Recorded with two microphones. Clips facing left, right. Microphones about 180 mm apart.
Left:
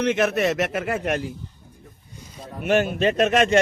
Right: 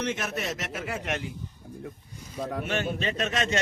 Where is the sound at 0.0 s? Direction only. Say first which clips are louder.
Left 10 dB; 70° left (ahead or behind); by 1.3 s 45° left (ahead or behind).